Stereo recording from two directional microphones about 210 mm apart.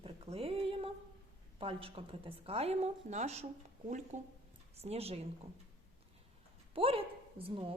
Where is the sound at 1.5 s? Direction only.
25° right (ahead or behind).